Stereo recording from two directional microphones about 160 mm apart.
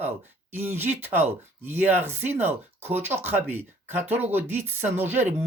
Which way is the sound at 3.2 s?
15° right (ahead or behind).